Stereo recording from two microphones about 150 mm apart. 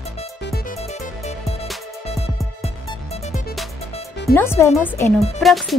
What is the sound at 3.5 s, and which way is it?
Music, centre (ahead or behind).